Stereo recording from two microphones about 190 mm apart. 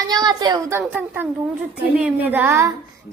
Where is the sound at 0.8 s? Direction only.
10° right (ahead or behind).